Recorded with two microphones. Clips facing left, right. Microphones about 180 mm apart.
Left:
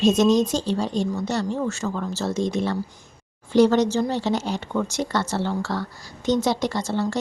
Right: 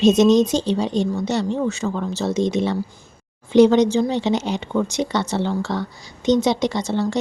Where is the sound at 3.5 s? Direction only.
15° right (ahead or behind).